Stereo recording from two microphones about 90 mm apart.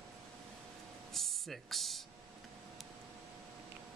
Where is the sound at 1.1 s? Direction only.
Centre (ahead or behind).